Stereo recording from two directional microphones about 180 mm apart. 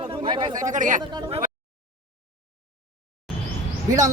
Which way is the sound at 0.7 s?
45° right (ahead or behind).